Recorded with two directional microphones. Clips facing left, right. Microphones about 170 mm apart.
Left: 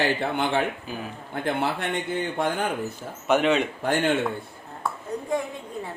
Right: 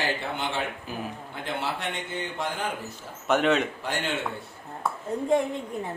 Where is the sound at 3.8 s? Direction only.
55° left (ahead or behind).